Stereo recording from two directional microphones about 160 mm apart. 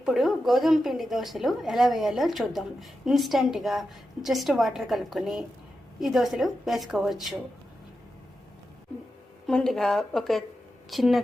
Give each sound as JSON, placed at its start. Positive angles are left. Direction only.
{"t": 0.0, "sound": "a woman's voice", "side_deg": 0}
{"t": 9.5, "sound": "a woman's voice", "side_deg": 5}